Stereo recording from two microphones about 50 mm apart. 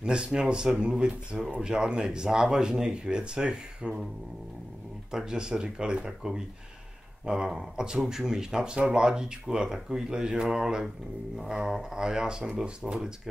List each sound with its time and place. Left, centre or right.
0.0 s speech: centre
5.1 s speech: centre